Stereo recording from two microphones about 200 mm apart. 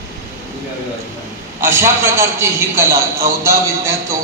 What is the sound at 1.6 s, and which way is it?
A man's voice, 10° right (ahead or behind).